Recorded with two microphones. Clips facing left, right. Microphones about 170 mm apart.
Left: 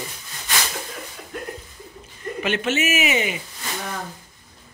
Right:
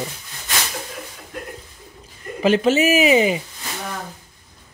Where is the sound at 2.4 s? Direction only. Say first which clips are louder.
Right 7 dB; 35° right (ahead or behind).